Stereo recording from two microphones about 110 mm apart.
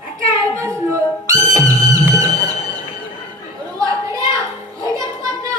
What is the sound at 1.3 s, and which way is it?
Music, 35° right (ahead or behind).